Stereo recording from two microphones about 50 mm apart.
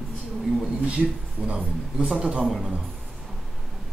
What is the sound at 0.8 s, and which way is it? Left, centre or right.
A man's voice, right.